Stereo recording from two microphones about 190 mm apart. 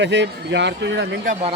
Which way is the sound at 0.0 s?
65° right (ahead or behind).